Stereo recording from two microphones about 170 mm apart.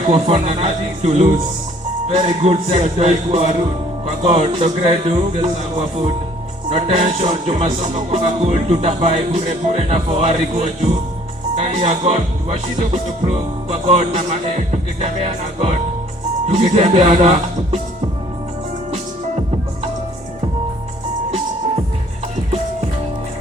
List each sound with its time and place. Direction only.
0.1 s speech: 40° right (ahead or behind)
2.0 s music: 40° right (ahead or behind)
11.5 s speech: 35° right (ahead or behind)
12.8 s music: 35° right (ahead or behind)